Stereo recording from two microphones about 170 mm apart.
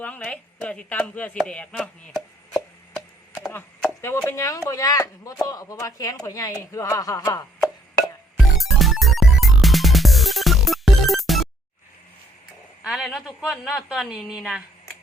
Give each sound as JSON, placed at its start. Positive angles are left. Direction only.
{"t": 0.0, "sound": "speech", "side_deg": 5}
{"t": 8.6, "sound": "music", "side_deg": 0}
{"t": 12.8, "sound": "a woman's voice", "side_deg": 0}